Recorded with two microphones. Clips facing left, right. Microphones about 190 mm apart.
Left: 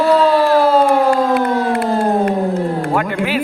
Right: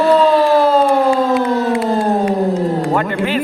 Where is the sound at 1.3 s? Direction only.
60° left (ahead or behind).